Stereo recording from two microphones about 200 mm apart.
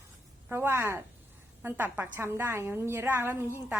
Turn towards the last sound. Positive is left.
turn(degrees=-10)  # may be behind; listen again after turning